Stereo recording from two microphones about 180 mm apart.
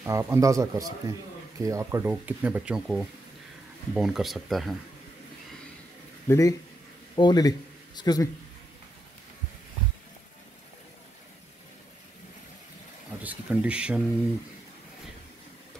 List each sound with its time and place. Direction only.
0.0 s speech: 15° right (ahead or behind)
6.2 s speech: 15° left (ahead or behind)
13.2 s speech: 10° right (ahead or behind)